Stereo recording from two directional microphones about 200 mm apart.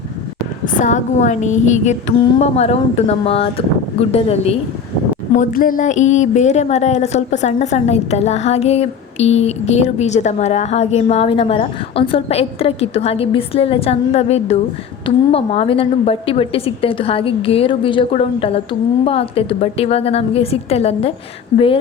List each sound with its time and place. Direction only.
0.6 s speech: 40° left (ahead or behind)
5.3 s a woman's voice: 40° left (ahead or behind)